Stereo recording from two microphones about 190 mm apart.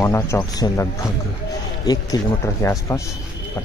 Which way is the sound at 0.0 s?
15° left (ahead or behind).